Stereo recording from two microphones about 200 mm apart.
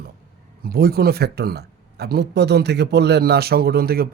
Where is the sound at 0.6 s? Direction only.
50° right (ahead or behind).